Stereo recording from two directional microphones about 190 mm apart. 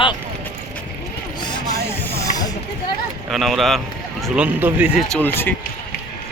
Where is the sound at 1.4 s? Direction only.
25° left (ahead or behind).